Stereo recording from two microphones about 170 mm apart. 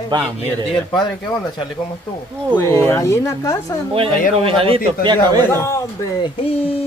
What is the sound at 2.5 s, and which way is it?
Speech, 15° left (ahead or behind).